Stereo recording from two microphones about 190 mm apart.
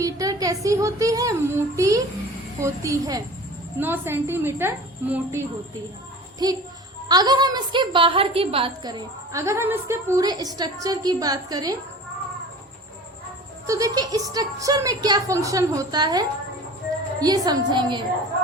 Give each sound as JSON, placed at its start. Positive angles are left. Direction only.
{"t": 0.0, "sound": "a woman's voice", "side_deg": -20}
{"t": 13.7, "sound": "a woman's voice", "side_deg": -20}